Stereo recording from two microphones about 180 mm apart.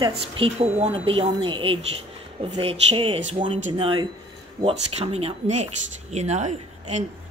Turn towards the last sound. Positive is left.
turn(degrees=-40)  # may be behind; listen again after turning